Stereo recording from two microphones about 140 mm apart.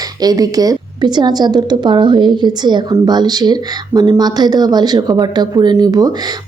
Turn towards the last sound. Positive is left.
turn(degrees=-30)  # may be behind; listen again after turning